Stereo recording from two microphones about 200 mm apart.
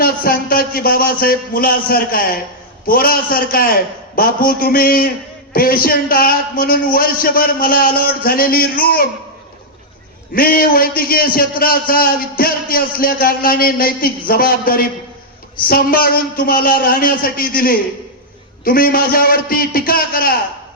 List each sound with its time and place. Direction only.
0.0 s a man's voice: 45° left (ahead or behind)
10.3 s a man's voice: 50° left (ahead or behind)